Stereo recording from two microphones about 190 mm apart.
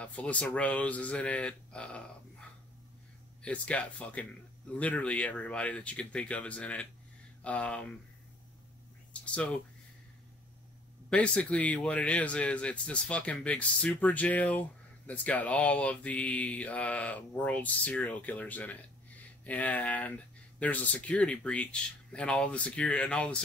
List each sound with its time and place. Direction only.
0.0 s speech: 5° left (ahead or behind)
3.4 s speech: 5° left (ahead or behind)
9.1 s speech: 5° left (ahead or behind)
11.1 s speech: 5° left (ahead or behind)